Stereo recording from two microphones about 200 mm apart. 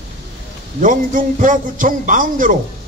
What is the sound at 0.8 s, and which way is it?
A man's voice, 40° right (ahead or behind).